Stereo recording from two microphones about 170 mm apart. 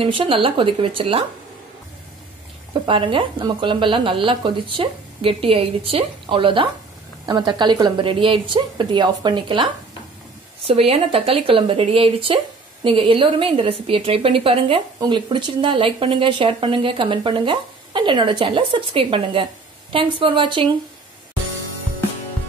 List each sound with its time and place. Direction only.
0.0 s speech: 30° right (ahead or behind)
2.9 s speech: 30° right (ahead or behind)
10.7 s speech: 35° right (ahead or behind)